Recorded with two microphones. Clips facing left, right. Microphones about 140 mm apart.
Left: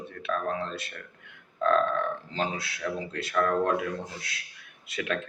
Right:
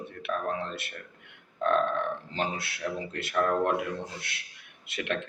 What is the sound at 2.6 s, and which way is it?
Speech, 30° right (ahead or behind).